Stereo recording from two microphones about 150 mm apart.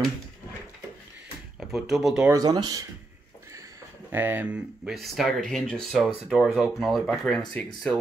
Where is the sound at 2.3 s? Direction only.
25° right (ahead or behind).